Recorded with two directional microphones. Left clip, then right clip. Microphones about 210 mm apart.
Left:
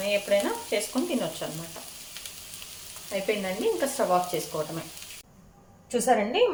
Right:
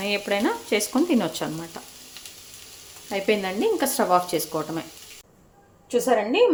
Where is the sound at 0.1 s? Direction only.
55° right (ahead or behind).